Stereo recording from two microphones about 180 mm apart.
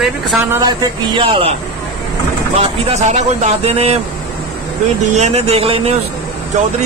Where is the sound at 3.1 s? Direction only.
40° right (ahead or behind).